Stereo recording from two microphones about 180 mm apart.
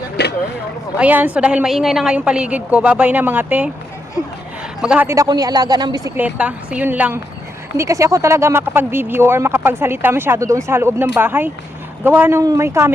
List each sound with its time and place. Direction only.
0.2 s vehicle: 65° left (ahead or behind)
0.9 s speech: 10° right (ahead or behind)
4.8 s a man's voice: 5° right (ahead or behind)
5.0 s speech: 20° right (ahead or behind)
6.1 s speech: 10° right (ahead or behind)